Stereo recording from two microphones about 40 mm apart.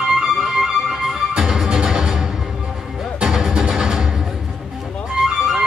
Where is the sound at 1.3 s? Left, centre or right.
Centre.